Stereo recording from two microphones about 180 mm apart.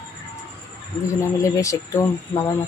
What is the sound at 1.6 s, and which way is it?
Speech, 15° left (ahead or behind).